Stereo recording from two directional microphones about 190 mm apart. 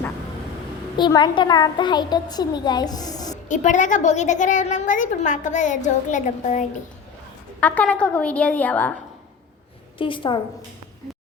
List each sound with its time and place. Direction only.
0.9 s a child's voice: 25° left (ahead or behind)
3.5 s a woman's voice: 40° left (ahead or behind)
7.6 s a woman's voice: 5° left (ahead or behind)
10.0 s a child's voice: 25° left (ahead or behind)